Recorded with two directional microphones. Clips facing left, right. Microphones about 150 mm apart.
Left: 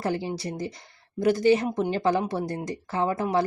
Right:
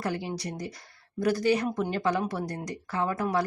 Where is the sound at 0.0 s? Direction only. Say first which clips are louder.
Left 3 dB; 30° left (ahead or behind).